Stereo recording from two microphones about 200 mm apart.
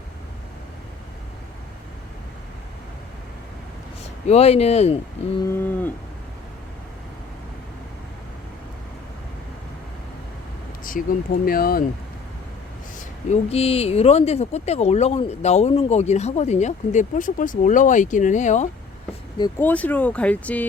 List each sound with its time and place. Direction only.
4.3 s speech: 30° left (ahead or behind)
5.5 s speech: 10° left (ahead or behind)
10.8 s speech: 45° left (ahead or behind)
13.0 s speech: 35° left (ahead or behind)
19.5 s speech: 10° left (ahead or behind)